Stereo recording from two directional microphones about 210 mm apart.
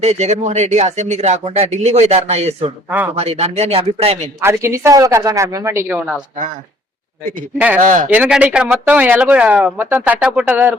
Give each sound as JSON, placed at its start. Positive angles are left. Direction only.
{"t": 0.0, "sound": "a man's voice", "side_deg": -30}
{"t": 4.4, "sound": "speech", "side_deg": -15}
{"t": 7.8, "sound": "speech", "side_deg": -40}
{"t": 8.1, "sound": "speech", "side_deg": -5}